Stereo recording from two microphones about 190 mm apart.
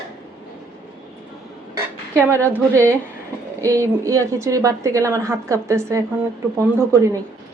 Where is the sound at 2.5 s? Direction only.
15° right (ahead or behind).